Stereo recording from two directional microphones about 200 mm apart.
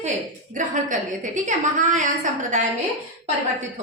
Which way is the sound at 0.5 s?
40° right (ahead or behind).